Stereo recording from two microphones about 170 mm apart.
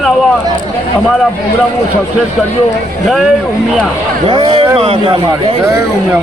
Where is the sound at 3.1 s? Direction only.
Centre (ahead or behind).